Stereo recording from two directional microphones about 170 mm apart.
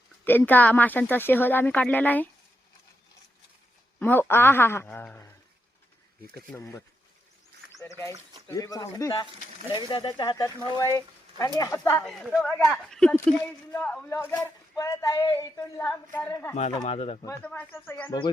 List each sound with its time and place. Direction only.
0.3 s speech: 10° left (ahead or behind)
4.0 s speech: 10° left (ahead or behind)
6.6 s speech: 15° left (ahead or behind)
8.4 s speech: 20° left (ahead or behind)
12.0 s speech: centre (ahead or behind)
16.8 s speech: 35° left (ahead or behind)
17.4 s speech: 10° left (ahead or behind)